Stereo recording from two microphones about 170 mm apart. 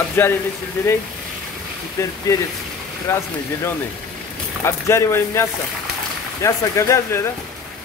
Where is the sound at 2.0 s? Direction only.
20° left (ahead or behind).